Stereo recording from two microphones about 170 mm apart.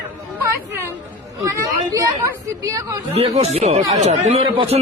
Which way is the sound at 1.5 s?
20° right (ahead or behind).